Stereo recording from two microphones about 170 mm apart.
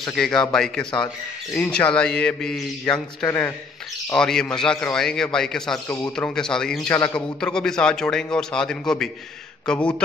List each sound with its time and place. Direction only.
0.0 s a man's voice: centre (ahead or behind)
0.9 s speech: 25° left (ahead or behind)
1.6 s a man's voice: 5° left (ahead or behind)